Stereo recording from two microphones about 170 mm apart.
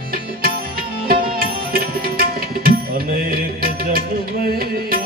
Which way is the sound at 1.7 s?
60° right (ahead or behind).